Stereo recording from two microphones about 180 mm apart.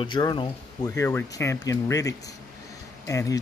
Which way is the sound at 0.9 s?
15° left (ahead or behind).